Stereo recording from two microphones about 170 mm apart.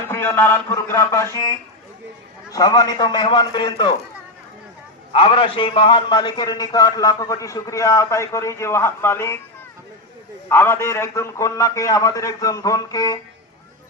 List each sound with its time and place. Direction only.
0.1 s a man's voice: 15° left (ahead or behind)
5.1 s a man's voice: 30° left (ahead or behind); by 9.4 s 15° left (ahead or behind)
10.5 s a man's voice: 15° left (ahead or behind)